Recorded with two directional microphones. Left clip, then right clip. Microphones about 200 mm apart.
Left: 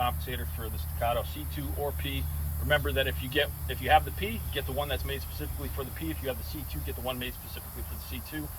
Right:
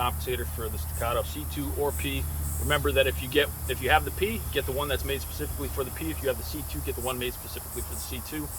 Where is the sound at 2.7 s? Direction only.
20° right (ahead or behind).